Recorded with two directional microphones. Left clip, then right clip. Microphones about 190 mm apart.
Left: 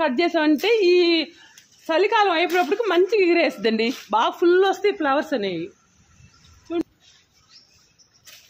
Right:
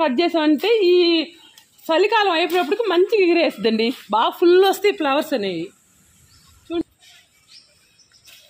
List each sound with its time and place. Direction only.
0.0 s speech: 40° right (ahead or behind)
1.9 s a woman's voice: 45° right (ahead or behind)